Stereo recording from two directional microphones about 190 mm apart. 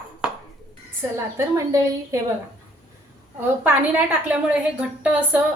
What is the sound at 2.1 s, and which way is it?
Speech, 15° right (ahead or behind).